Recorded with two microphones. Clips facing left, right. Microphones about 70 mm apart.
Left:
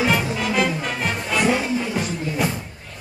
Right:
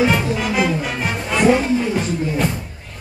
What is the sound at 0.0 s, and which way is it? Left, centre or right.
Music, centre.